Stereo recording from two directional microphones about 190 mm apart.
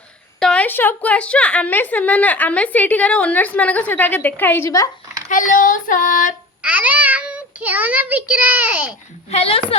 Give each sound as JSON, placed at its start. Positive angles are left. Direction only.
{"t": 0.3, "sound": "a woman's voice", "side_deg": 5}
{"t": 5.3, "sound": "child singing", "side_deg": 45}
{"t": 6.6, "sound": "child singing", "side_deg": -5}
{"t": 9.3, "sound": "a woman's voice", "side_deg": 30}